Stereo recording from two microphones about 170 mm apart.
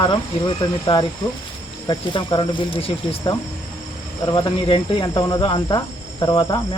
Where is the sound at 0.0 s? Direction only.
25° left (ahead or behind).